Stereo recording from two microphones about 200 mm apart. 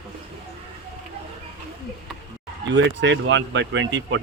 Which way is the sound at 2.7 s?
60° right (ahead or behind).